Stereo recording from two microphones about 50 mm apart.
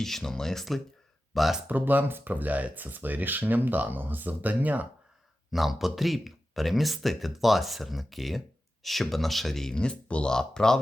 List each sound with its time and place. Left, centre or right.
0.0 s speech: centre
1.6 s speech: right
5.5 s speech: centre